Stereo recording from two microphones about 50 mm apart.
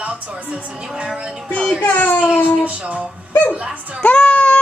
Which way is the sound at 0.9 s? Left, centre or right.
Right.